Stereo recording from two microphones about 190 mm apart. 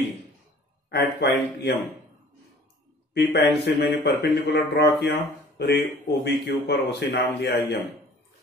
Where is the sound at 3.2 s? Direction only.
65° left (ahead or behind).